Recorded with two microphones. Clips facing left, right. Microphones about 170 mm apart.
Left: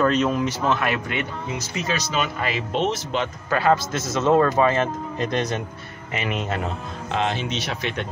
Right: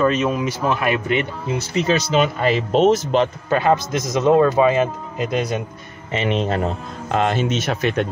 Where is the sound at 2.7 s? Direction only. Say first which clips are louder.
Right 8 dB; 45° right (ahead or behind).